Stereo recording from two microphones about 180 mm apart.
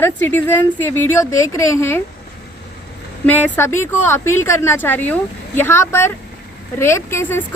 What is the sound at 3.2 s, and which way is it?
A woman's voice, 10° left (ahead or behind).